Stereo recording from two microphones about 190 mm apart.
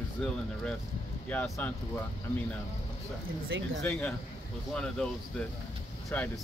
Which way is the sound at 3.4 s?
85° right.